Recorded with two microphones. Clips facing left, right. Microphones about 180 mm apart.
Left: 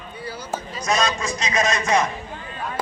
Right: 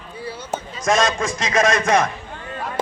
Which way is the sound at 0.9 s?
50° right (ahead or behind).